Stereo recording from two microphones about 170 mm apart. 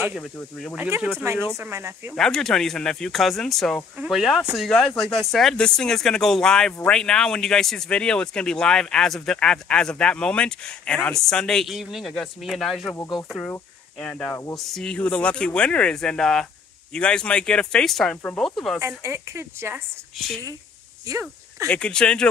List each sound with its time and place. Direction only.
0.0 s speech: 5° right (ahead or behind)
2.1 s speech: 5° left (ahead or behind)
13.9 s speech: 5° left (ahead or behind)
18.8 s speech: 15° right (ahead or behind)
21.1 s speech: 20° right (ahead or behind)
21.6 s speech: 5° left (ahead or behind)